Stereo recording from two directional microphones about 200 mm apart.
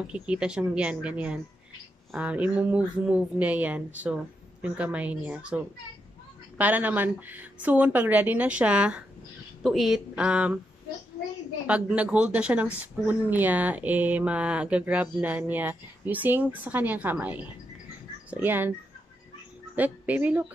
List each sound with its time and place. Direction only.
0.0 s speech: 5° right (ahead or behind)
6.6 s speech: 10° right (ahead or behind)
11.6 s speech: 5° right (ahead or behind)
19.7 s a woman's voice: 10° right (ahead or behind)